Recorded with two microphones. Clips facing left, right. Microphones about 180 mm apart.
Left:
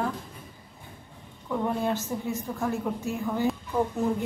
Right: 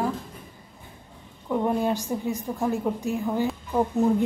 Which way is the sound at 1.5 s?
15° right (ahead or behind).